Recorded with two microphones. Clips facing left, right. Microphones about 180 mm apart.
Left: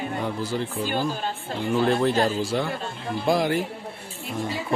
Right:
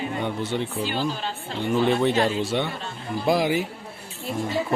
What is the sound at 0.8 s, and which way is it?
Speech, 50° left (ahead or behind).